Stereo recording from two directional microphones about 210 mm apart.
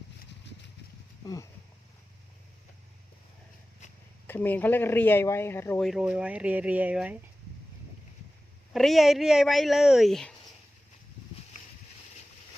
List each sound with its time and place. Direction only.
1.2 s speech: 15° left (ahead or behind)
4.3 s speech: 10° left (ahead or behind)
8.7 s speech: centre (ahead or behind)